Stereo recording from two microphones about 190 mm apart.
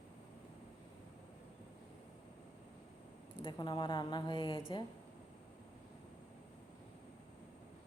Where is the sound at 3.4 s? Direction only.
25° left (ahead or behind).